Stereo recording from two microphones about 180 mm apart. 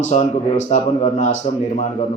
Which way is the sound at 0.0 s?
45° left (ahead or behind).